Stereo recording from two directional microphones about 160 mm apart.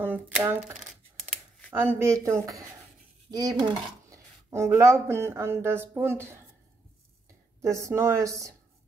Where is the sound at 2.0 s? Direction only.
20° right (ahead or behind).